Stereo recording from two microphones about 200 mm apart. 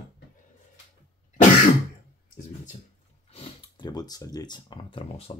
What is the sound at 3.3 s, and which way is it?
Speech, 25° left (ahead or behind).